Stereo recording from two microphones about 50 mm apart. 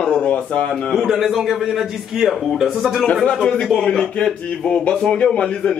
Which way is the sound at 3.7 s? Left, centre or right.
Centre.